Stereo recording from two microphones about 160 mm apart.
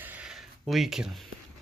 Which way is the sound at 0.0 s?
10° right (ahead or behind).